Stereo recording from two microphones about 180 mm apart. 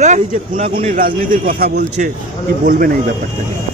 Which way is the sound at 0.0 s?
40° right (ahead or behind).